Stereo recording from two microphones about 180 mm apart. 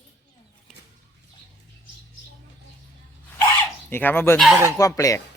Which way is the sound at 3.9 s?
10° left (ahead or behind).